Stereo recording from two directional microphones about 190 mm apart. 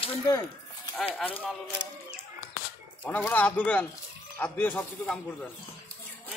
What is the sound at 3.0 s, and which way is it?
Speech, 10° left (ahead or behind).